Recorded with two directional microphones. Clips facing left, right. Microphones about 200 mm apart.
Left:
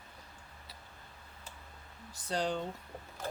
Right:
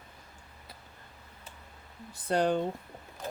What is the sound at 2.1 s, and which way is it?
Speech, 55° right (ahead or behind).